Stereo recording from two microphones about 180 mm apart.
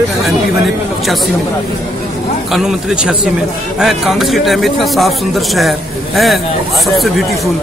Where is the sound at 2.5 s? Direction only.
5° right (ahead or behind).